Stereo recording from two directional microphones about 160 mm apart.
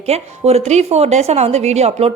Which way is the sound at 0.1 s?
40° right (ahead or behind).